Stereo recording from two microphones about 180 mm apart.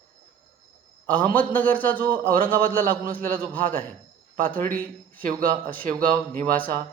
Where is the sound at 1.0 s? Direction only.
10° left (ahead or behind).